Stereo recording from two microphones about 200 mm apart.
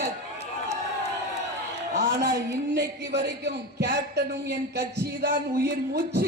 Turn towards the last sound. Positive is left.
turn(degrees=-55)  # may be behind; listen again after turning